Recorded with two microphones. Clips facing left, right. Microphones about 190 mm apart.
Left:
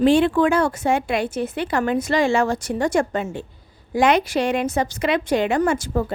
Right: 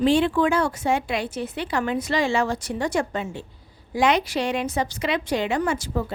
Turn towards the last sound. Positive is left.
turn(degrees=50)  # may be behind; listen again after turning